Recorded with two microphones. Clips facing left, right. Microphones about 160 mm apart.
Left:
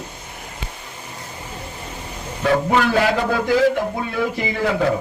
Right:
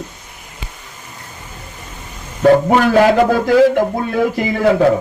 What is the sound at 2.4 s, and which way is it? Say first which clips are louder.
A man's voice: right 7 dB; 50° right (ahead or behind).